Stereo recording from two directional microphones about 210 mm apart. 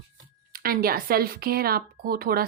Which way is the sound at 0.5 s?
45° right (ahead or behind).